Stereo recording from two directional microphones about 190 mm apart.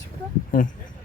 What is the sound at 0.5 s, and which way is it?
Speech, 45° left (ahead or behind).